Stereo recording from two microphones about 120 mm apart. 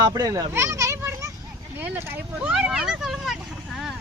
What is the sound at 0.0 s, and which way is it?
Speech, 30° right (ahead or behind).